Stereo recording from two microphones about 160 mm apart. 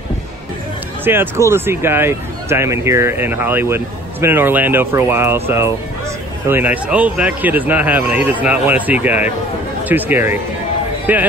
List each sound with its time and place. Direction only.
1.0 s speech: 15° right (ahead or behind)